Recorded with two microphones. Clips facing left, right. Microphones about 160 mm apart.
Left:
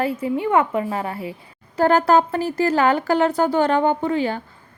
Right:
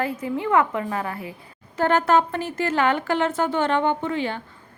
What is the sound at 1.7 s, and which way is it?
Speech, 35° left (ahead or behind).